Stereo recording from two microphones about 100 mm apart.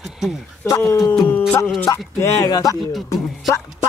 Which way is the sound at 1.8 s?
30° left (ahead or behind).